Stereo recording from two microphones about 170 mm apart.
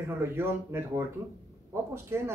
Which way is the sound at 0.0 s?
15° right (ahead or behind).